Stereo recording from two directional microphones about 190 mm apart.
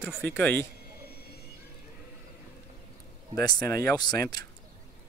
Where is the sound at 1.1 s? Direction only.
55° left (ahead or behind).